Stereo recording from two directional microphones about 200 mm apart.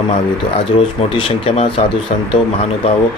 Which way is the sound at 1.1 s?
25° left (ahead or behind).